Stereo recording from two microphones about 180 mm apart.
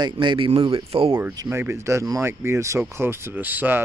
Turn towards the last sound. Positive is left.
turn(degrees=-10)  # may be behind; listen again after turning